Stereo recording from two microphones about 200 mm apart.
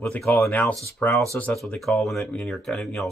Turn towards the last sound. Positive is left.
turn(degrees=5)  # may be behind; listen again after turning